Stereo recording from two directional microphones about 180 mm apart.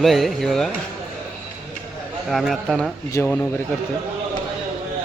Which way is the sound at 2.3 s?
Centre (ahead or behind).